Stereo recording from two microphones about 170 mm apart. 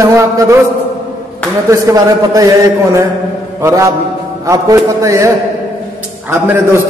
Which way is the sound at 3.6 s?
15° right (ahead or behind).